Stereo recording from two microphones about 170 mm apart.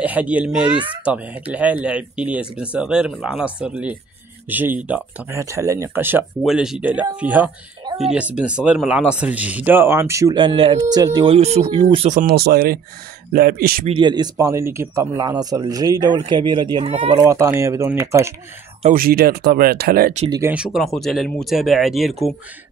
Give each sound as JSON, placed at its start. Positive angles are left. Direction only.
{"t": 0.0, "sound": "speech", "side_deg": -10}
{"t": 11.3, "sound": "speech", "side_deg": -40}
{"t": 12.3, "sound": "speech", "side_deg": -65}
{"t": 13.8, "sound": "speech", "side_deg": -30}
{"t": 17.2, "sound": "speech", "side_deg": -15}
{"t": 18.9, "sound": "speech", "side_deg": -60}
{"t": 20.2, "sound": "speech", "side_deg": -20}
{"t": 20.5, "sound": "speech", "side_deg": -5}